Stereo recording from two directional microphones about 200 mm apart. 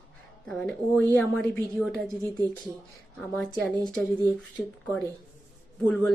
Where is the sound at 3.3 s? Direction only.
5° left (ahead or behind).